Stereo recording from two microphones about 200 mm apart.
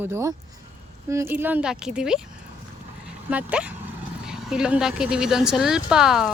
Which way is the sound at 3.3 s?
5° right (ahead or behind).